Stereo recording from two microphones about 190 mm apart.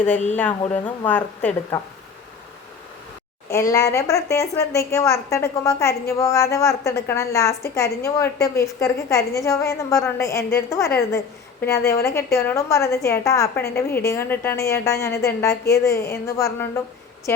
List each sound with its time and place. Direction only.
0.9 s a woman's voice: 10° left (ahead or behind)
3.5 s a woman's voice: 15° left (ahead or behind)